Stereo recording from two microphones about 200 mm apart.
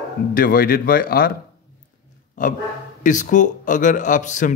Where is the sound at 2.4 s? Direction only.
40° left (ahead or behind).